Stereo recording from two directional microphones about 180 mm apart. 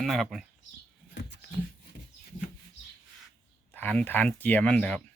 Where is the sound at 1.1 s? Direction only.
70° left (ahead or behind).